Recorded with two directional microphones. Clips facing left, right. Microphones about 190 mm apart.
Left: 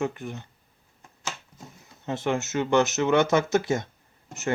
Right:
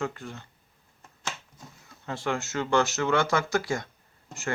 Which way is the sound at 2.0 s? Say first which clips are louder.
Left 4 dB; 20° left (ahead or behind).